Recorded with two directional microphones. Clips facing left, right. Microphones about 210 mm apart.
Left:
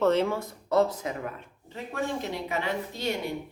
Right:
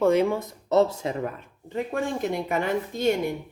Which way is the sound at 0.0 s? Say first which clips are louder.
Right 3 dB; 10° right (ahead or behind).